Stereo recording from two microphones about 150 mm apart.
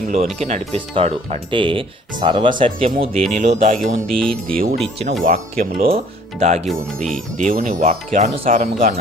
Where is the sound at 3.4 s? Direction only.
50° right (ahead or behind).